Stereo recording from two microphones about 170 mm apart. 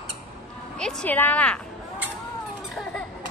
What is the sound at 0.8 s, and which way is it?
Speech, 10° left (ahead or behind).